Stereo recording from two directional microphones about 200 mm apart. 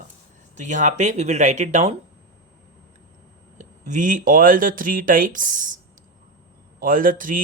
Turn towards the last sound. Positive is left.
turn(degrees=-40)  # may be behind; listen again after turning